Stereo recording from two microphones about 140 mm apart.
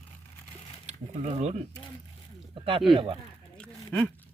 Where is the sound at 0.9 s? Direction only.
55° right (ahead or behind).